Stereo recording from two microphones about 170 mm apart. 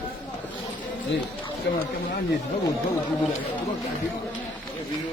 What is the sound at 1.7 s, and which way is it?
Speech, 70° left (ahead or behind).